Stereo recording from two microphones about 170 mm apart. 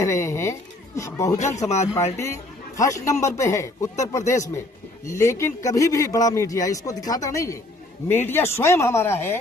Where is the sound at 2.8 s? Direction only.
20° left (ahead or behind).